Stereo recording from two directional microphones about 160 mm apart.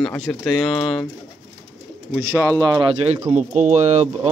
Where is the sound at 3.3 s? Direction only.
45° right (ahead or behind).